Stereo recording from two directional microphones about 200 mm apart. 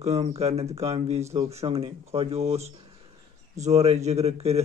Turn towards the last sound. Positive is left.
turn(degrees=-30)  # may be behind; listen again after turning